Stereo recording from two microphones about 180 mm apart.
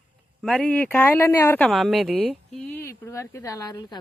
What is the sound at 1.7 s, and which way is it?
Speech, centre (ahead or behind).